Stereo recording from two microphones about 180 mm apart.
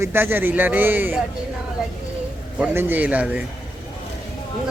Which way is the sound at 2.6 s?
10° right (ahead or behind).